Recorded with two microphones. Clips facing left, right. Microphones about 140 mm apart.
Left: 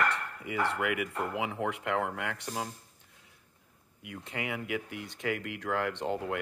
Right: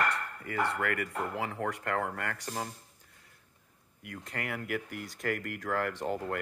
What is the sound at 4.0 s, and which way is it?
Speech, 5° left (ahead or behind).